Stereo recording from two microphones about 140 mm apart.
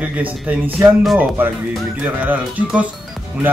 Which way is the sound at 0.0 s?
10° right (ahead or behind).